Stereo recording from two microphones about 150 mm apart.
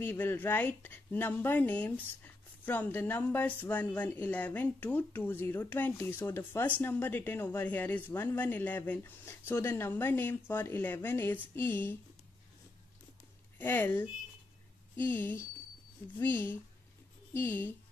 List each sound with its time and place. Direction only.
0.0 s a woman's voice: 15° left (ahead or behind)
13.6 s a woman's voice: 15° left (ahead or behind)